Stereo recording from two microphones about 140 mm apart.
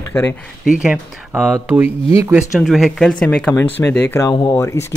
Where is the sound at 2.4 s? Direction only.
5° right (ahead or behind).